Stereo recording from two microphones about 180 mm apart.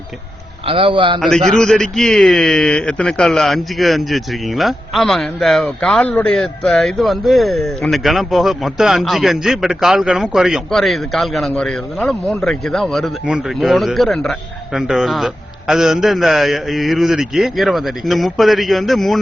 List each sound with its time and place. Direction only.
0.6 s a man's voice: 30° right (ahead or behind)
1.2 s speech: centre (ahead or behind)